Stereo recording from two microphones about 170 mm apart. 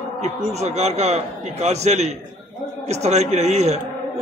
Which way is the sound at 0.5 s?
40° right (ahead or behind).